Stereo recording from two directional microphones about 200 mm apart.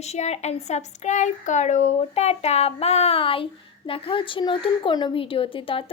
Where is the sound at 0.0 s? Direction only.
35° left (ahead or behind).